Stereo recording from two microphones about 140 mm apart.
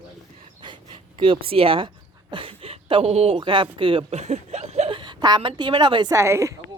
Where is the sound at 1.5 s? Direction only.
40° right (ahead or behind).